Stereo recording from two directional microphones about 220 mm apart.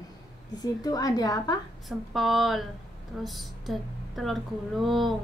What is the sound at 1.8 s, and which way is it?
A woman's voice, centre (ahead or behind).